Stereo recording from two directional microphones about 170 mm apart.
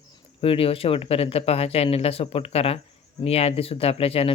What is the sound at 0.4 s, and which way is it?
Speech, 35° left (ahead or behind).